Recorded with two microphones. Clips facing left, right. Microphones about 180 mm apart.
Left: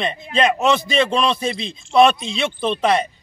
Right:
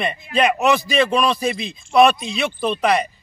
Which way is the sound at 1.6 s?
25° left (ahead or behind).